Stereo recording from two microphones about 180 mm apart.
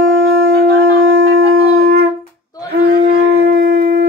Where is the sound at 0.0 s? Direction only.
90° right.